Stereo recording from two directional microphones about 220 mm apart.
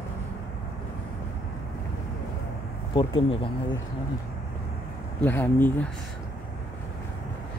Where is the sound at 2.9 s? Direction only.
20° left (ahead or behind).